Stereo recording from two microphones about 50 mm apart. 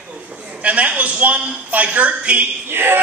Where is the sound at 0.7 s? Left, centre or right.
Right.